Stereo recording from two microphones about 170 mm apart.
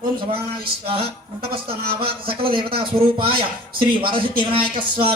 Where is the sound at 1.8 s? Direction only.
60° right (ahead or behind).